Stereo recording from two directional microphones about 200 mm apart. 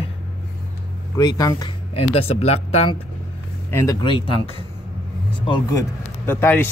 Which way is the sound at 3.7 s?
15° left (ahead or behind).